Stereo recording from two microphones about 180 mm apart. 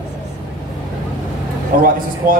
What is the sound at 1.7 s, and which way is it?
Speech, 50° right (ahead or behind).